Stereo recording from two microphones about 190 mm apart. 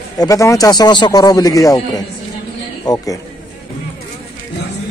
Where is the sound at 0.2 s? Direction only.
15° left (ahead or behind).